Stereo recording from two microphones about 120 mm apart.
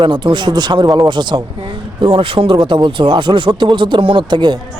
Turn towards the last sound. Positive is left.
turn(degrees=-40)  # may be behind; listen again after turning